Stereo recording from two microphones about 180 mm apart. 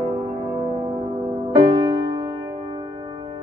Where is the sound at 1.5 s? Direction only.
30° right (ahead or behind).